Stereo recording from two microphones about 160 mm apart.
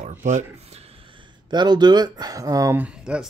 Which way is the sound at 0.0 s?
50° right (ahead or behind).